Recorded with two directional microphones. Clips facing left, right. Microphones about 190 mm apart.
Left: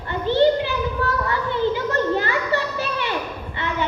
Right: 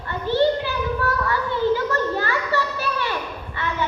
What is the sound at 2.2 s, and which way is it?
Children playing, 20° left (ahead or behind).